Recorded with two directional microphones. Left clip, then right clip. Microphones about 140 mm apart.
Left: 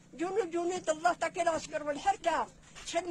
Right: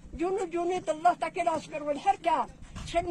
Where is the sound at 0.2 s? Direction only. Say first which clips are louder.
Right 2 dB; 45° left (ahead or behind).